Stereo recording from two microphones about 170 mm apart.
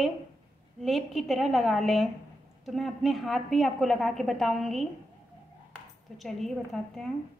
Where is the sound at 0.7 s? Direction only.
Centre (ahead or behind).